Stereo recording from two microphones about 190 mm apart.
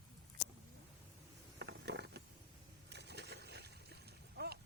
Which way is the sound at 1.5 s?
65° right (ahead or behind).